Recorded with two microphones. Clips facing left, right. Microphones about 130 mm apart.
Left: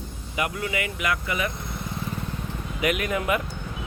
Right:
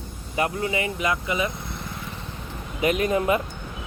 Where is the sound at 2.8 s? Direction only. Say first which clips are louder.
Right 4 dB; 30° right (ahead or behind).